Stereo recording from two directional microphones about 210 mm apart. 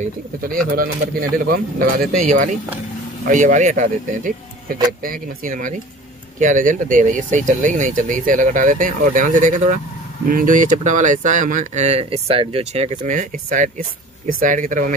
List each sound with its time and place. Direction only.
0.0 s speech: 40° right (ahead or behind)